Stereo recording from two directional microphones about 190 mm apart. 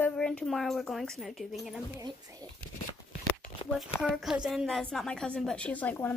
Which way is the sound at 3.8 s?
Centre (ahead or behind).